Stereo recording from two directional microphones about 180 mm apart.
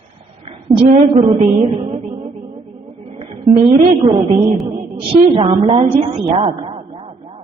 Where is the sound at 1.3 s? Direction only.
30° right (ahead or behind).